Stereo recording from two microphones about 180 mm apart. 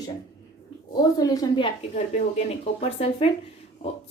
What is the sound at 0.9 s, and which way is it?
Speech, 20° left (ahead or behind).